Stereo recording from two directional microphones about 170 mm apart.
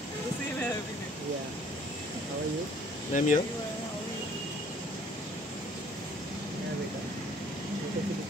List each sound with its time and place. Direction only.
3.1 s speech: 50° left (ahead or behind)